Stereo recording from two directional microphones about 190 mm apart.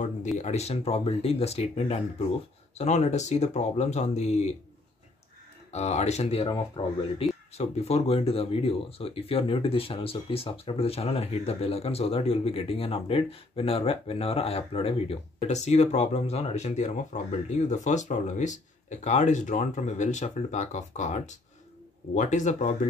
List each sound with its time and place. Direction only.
0.4 s speech: 35° left (ahead or behind)
5.7 s speech: 35° left (ahead or behind)